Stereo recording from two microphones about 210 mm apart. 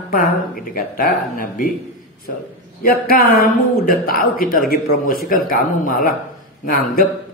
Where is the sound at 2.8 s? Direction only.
50° left (ahead or behind).